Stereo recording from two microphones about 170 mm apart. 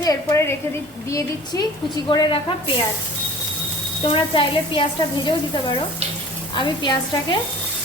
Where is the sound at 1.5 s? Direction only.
20° left (ahead or behind).